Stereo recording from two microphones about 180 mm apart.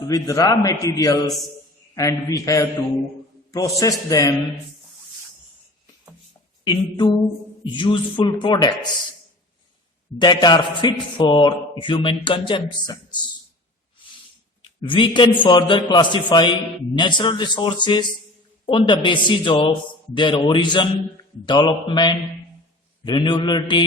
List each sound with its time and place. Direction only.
0.1 s a man's voice: 20° left (ahead or behind)
6.7 s a man's voice: 25° left (ahead or behind)
10.2 s a man's voice: 25° left (ahead or behind)
14.6 s a man's voice: 25° left (ahead or behind)